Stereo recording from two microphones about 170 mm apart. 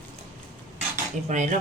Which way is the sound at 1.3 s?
45° right (ahead or behind).